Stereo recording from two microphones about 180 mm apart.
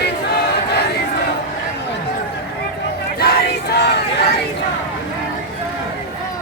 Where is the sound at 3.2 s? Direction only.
60° left (ahead or behind).